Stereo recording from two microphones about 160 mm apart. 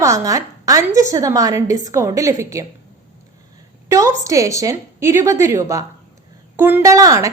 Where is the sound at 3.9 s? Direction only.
20° right (ahead or behind).